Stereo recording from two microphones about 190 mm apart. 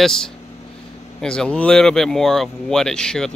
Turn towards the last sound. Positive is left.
turn(degrees=5)  # may be behind; listen again after turning